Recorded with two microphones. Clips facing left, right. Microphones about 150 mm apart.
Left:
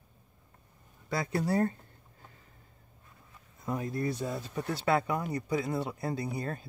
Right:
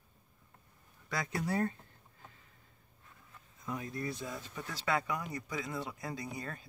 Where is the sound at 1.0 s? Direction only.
30° left (ahead or behind).